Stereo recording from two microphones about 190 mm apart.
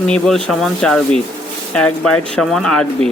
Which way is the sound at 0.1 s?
5° left (ahead or behind).